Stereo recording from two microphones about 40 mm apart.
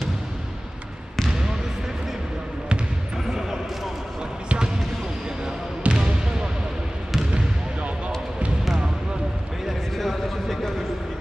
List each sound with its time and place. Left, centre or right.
3.3 s basketball bounce: centre
5.9 s basketball bounce: right
9.7 s a sound: centre